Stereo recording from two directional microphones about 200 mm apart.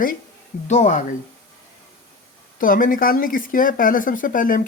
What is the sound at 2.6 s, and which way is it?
Speech, 45° left (ahead or behind).